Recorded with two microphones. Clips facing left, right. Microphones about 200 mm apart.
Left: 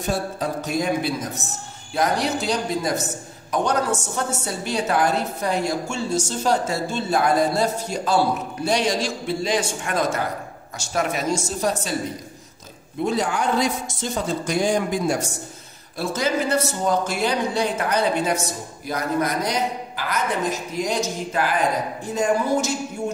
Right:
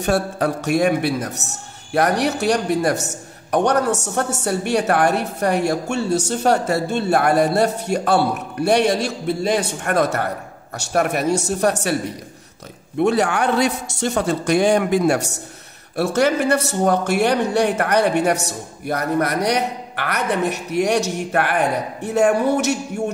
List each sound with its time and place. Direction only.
0.0 s a woman's voice: 70° right (ahead or behind)
13.0 s a woman's voice: 70° right (ahead or behind)